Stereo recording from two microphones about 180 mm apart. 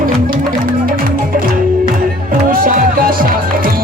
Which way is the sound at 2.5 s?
50° right (ahead or behind).